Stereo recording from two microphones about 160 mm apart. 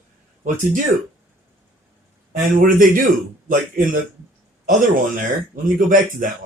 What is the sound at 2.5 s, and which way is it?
Speech, 55° right (ahead or behind).